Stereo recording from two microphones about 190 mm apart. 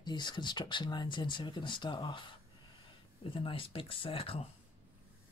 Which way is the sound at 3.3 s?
30° left (ahead or behind).